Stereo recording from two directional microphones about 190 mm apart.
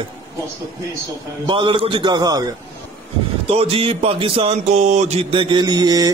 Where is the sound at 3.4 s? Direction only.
30° right (ahead or behind).